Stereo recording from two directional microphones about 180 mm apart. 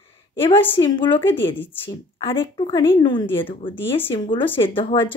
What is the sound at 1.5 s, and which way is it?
Speech, 10° left (ahead or behind).